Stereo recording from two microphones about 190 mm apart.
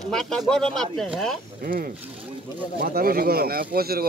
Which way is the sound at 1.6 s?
50° right (ahead or behind).